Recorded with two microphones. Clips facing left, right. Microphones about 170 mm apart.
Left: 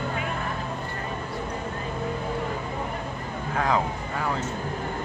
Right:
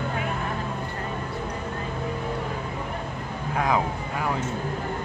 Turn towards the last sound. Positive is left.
turn(degrees=-15)  # may be behind; listen again after turning